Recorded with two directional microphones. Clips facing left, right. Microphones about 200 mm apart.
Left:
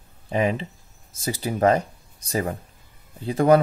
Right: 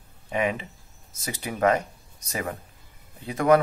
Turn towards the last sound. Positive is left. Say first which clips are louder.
# left 3 dB
turn(degrees=30)  # may be behind; listen again after turning